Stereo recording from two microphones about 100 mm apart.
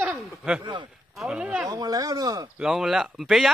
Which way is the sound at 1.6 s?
40° right (ahead or behind).